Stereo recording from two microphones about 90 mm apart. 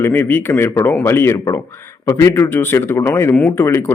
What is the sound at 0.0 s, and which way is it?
Speech, 25° left (ahead or behind).